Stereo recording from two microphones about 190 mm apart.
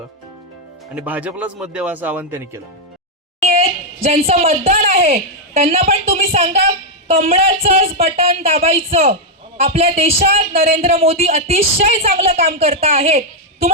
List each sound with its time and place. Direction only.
0.9 s speech: 10° right (ahead or behind)
3.5 s speech: 35° right (ahead or behind)